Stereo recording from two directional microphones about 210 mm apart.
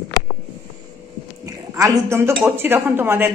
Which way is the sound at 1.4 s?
15° right (ahead or behind).